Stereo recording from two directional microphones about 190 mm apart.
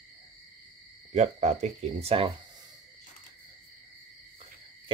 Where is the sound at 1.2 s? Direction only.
35° right (ahead or behind).